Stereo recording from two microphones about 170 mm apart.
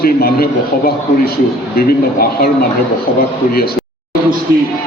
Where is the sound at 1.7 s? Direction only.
60° left (ahead or behind).